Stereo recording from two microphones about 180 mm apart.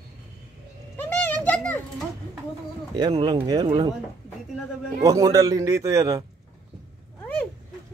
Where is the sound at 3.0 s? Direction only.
25° right (ahead or behind).